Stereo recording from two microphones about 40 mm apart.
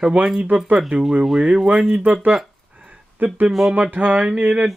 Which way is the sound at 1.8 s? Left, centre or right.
Right.